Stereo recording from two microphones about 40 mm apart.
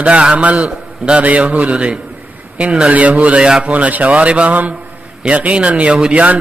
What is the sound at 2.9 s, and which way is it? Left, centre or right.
A man's voice, right.